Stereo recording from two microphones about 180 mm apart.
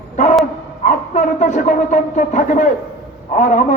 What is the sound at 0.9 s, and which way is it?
A man's voice, 40° left (ahead or behind).